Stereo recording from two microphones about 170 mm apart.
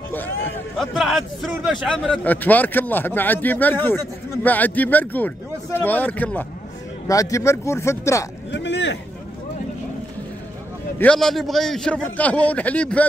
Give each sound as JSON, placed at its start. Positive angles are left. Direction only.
{"t": 0.7, "sound": "a man's voice", "side_deg": 0}
{"t": 8.5, "sound": "a sound", "side_deg": 90}
{"t": 11.0, "sound": "a man's voice", "side_deg": 5}